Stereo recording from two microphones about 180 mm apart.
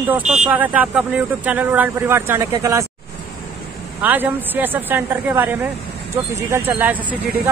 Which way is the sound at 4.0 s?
10° right (ahead or behind).